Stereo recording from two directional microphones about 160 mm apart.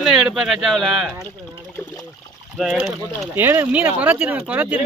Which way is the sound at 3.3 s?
15° right (ahead or behind).